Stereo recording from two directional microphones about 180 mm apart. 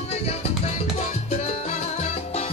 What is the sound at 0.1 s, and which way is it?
Salsa music, 35° left (ahead or behind).